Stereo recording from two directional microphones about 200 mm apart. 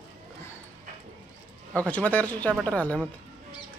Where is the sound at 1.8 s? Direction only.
10° left (ahead or behind).